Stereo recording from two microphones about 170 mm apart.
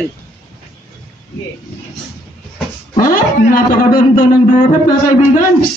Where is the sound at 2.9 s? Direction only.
55° left (ahead or behind).